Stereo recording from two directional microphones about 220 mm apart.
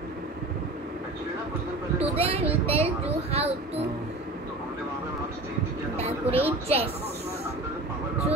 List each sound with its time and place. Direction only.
2.0 s a sound: 25° right (ahead or behind)
2.7 s a child's voice: 25° right (ahead or behind)
5.9 s speech: 30° right (ahead or behind)